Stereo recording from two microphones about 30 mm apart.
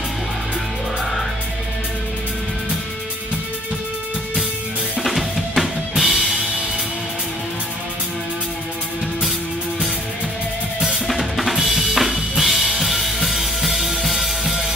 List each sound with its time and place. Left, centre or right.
5.0 s drum kit: centre
11.1 s drum kit: centre
14.4 s music: centre